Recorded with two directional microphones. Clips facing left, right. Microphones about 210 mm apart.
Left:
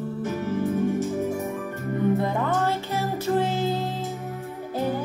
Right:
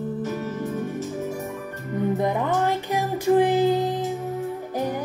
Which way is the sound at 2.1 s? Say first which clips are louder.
Right 1 dB; 15° right (ahead or behind).